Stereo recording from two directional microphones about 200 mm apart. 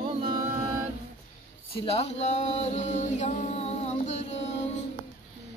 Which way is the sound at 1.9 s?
30° left (ahead or behind).